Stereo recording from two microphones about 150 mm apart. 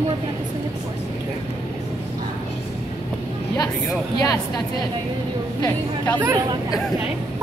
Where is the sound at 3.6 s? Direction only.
25° left (ahead or behind).